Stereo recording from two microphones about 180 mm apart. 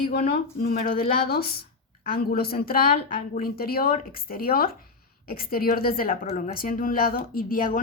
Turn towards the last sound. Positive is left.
turn(degrees=50)  # may be behind; listen again after turning